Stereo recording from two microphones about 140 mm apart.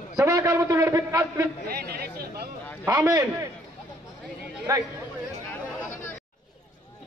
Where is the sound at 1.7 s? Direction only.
90° right.